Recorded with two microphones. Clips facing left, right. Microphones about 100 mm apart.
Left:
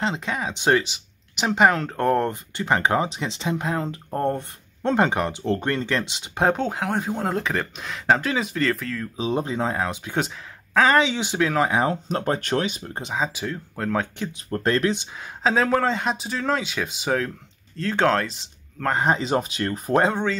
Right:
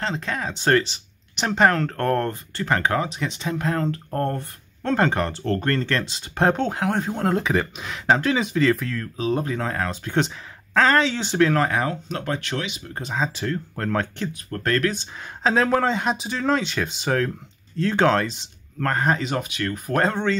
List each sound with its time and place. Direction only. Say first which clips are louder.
0.0 s speech: left 1 dB; 15° left (ahead or behind)
6.3 s speech: right 1 dB; 5° left (ahead or behind)
9.1 s speech: right 1 dB; 20° left (ahead or behind)
11.8 s speech: left 3 dB; 30° left (ahead or behind)
13.1 s speech: right 2 dB; 10° left (ahead or behind)
14.3 s speech: left 2 dB; 25° left (ahead or behind)
15.4 s speech: right 1 dB; centre (ahead or behind)
18.9 s speech: left 1 dB; 15° left (ahead or behind)
19.2 s speech: left 2 dB; 30° left (ahead or behind)
20.0 s speech: even; 10° left (ahead or behind)